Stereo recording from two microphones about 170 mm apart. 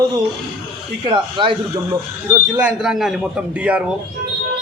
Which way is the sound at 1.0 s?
30° right (ahead or behind).